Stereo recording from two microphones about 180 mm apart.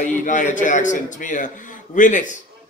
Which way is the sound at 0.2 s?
45° left (ahead or behind).